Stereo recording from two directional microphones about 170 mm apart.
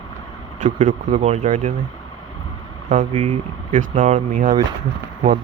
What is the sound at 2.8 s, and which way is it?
Speech, 40° right (ahead or behind).